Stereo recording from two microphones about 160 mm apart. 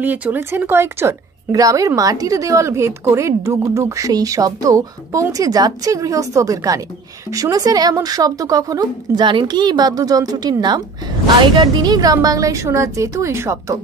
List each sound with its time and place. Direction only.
0.0 s a woman's voice: 10° right (ahead or behind)